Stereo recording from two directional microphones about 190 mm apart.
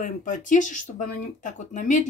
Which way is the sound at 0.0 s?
40° left (ahead or behind).